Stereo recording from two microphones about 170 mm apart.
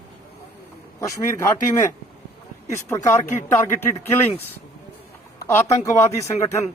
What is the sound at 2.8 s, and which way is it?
Speech, 15° left (ahead or behind).